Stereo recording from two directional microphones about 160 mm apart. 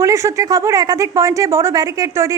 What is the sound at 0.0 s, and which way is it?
A woman's voice, 20° right (ahead or behind).